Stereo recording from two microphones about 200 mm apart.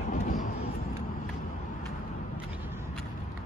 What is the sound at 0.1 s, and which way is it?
Vehicle, 40° left (ahead or behind).